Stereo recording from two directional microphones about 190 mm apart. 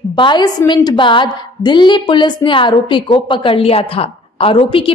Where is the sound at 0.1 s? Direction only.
25° left (ahead or behind).